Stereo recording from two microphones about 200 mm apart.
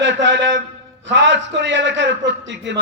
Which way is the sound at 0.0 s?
65° right (ahead or behind).